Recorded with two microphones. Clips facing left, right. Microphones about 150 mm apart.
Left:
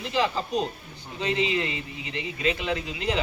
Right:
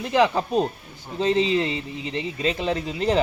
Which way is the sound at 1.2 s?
35° right (ahead or behind).